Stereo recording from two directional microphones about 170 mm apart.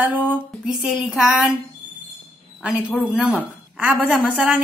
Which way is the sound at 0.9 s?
Centre (ahead or behind).